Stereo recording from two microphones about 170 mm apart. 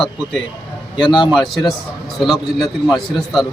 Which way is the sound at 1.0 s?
30° left (ahead or behind).